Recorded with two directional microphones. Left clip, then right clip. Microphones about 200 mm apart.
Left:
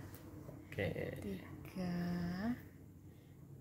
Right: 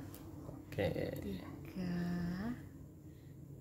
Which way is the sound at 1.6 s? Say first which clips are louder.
Even; 30° left (ahead or behind).